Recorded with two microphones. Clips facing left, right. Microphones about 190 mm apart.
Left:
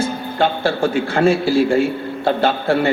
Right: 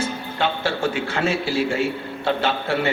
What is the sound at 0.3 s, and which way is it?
A man's voice, 45° left (ahead or behind).